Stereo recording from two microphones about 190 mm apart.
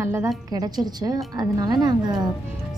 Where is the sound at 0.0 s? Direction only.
15° right (ahead or behind).